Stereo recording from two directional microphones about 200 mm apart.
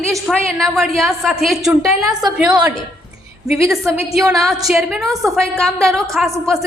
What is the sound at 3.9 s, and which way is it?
A woman's voice, 5° right (ahead or behind).